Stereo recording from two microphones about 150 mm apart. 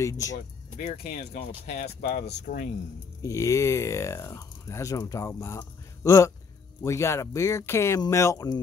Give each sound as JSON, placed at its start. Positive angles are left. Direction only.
{"t": 0.0, "sound": "speech", "side_deg": 20}
{"t": 1.3, "sound": "speech", "side_deg": 55}
{"t": 3.2, "sound": "speech", "side_deg": 20}